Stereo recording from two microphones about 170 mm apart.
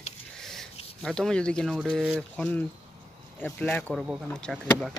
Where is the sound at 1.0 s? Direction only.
5° left (ahead or behind).